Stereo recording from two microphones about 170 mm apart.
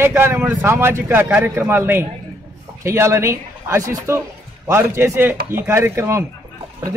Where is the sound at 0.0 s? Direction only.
15° right (ahead or behind).